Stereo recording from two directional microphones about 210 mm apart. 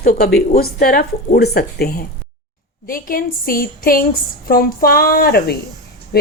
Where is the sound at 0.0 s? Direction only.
45° left (ahead or behind).